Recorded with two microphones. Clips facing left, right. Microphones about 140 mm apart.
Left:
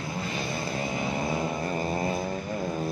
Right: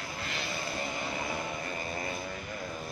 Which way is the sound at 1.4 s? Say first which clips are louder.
Left 8 dB; 40° left (ahead or behind).